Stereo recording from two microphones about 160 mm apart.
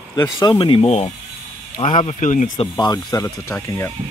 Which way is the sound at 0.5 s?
35° left (ahead or behind).